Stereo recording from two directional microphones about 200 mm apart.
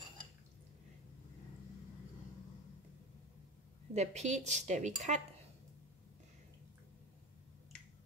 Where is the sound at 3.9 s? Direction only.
35° right (ahead or behind).